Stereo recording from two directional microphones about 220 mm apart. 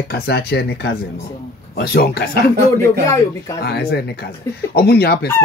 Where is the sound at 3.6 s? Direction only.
45° left (ahead or behind).